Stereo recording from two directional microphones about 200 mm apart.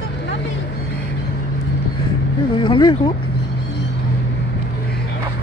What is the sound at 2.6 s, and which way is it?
Speech, 25° left (ahead or behind).